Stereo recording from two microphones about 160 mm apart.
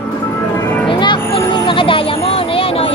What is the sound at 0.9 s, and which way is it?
Music, 30° left (ahead or behind).